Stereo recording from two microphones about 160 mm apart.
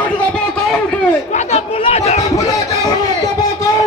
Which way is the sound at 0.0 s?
5° left (ahead or behind).